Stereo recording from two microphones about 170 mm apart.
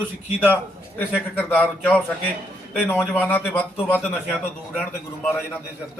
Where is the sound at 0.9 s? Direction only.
10° left (ahead or behind).